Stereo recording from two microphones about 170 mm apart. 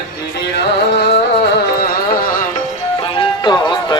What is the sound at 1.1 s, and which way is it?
Music, 65° left (ahead or behind).